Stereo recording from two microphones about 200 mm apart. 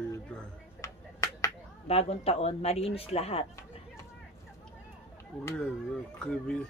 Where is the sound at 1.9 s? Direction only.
30° left (ahead or behind).